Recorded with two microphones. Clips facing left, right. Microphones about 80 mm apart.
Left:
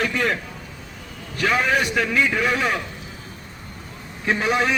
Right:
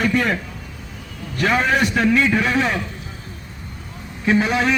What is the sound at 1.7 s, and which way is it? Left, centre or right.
A man's voice, centre.